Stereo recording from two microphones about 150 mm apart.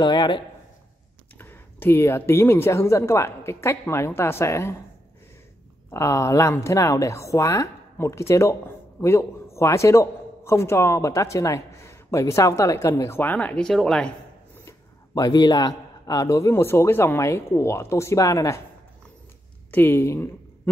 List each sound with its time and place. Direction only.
0.0 s a woman's voice: 30° left (ahead or behind)
1.4 s speech: 15° left (ahead or behind)
5.9 s a woman's voice: 20° left (ahead or behind)
14.6 s a man's voice: 20° left (ahead or behind)
19.7 s speech: 15° left (ahead or behind)